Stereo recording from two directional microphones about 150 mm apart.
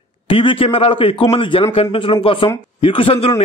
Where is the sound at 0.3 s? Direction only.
35° left (ahead or behind).